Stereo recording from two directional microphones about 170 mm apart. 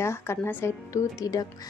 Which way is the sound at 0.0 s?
15° left (ahead or behind).